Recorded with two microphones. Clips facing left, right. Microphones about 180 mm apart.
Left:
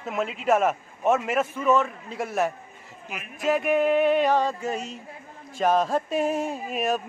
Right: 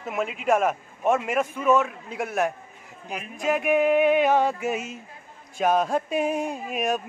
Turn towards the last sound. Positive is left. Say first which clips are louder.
# even
turn(degrees=0)  # may be behind; listen again after turning